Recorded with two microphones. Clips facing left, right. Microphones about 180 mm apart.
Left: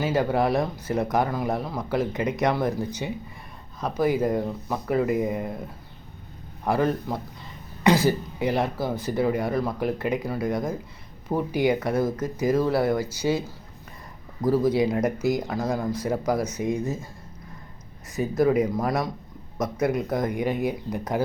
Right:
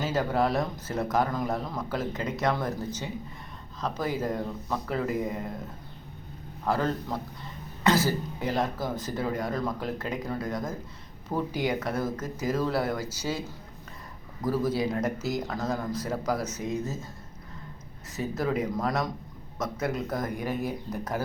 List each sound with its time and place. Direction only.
0.0 s speech: 10° left (ahead or behind)
6.7 s speech: 15° left (ahead or behind)
7.9 s cough: 15° left (ahead or behind)
8.4 s speech: 10° left (ahead or behind)
14.9 s speech: 15° left (ahead or behind)
18.3 s speech: 10° left (ahead or behind)